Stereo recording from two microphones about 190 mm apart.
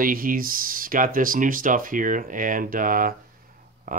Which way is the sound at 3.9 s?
45° right (ahead or behind).